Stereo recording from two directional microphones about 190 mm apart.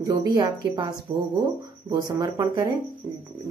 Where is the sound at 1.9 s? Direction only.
20° right (ahead or behind).